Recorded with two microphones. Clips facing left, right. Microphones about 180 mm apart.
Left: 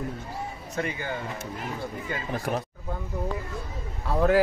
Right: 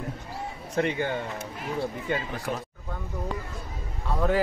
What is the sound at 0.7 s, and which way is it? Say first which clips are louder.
Speech: right 5 dB; 60° right (ahead or behind).